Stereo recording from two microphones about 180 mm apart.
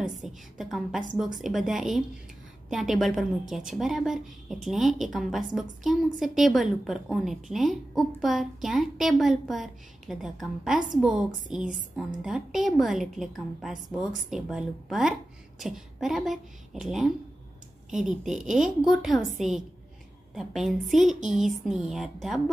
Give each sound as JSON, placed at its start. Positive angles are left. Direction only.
{"t": 0.0, "sound": "a woman's voice", "side_deg": 0}